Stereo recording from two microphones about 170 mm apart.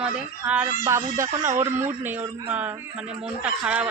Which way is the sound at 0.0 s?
5° right (ahead or behind).